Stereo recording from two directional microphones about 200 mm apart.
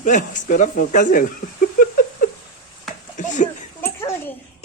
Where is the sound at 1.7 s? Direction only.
45° left (ahead or behind).